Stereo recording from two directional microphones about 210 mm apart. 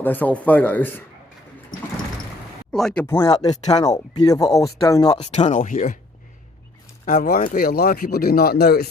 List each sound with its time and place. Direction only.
0.0 s speech: 10° left (ahead or behind)
2.7 s speech: 5° left (ahead or behind)
3.4 s speech: 30° left (ahead or behind)
3.8 s speech: 20° left (ahead or behind)
5.2 s speech: 35° left (ahead or behind)
7.0 s speech: 40° left (ahead or behind)